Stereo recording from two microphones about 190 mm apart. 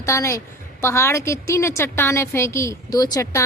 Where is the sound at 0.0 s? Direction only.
15° left (ahead or behind).